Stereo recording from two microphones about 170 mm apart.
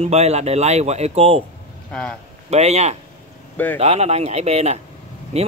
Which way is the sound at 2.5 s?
40° right (ahead or behind).